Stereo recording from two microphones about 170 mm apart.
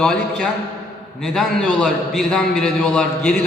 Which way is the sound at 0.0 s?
5° left (ahead or behind).